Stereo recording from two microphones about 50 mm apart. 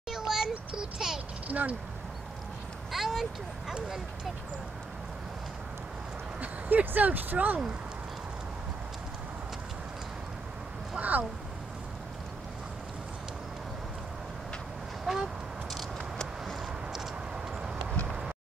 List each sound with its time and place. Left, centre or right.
0.1 s a sound: centre
1.5 s speech: right
2.9 s a sound: centre
6.4 s speech: right
11.0 s speech: right
15.1 s honk: centre
17.6 s clip-clop: centre
18.0 s vehicle: centre